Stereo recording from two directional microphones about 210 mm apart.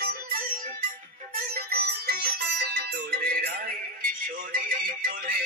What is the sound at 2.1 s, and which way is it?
Music, 50° right (ahead or behind).